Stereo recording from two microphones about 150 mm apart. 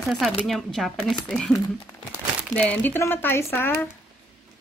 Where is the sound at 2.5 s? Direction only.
10° left (ahead or behind).